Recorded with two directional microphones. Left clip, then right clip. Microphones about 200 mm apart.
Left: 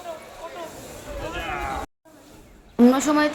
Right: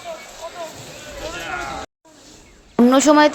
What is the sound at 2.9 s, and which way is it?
Speech, 35° right (ahead or behind).